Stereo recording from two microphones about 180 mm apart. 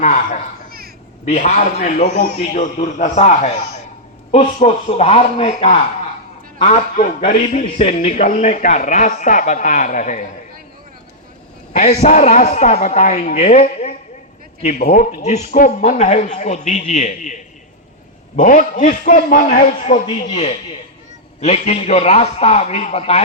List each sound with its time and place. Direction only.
0.0 s speech: 45° left (ahead or behind)
11.7 s speech: 40° left (ahead or behind)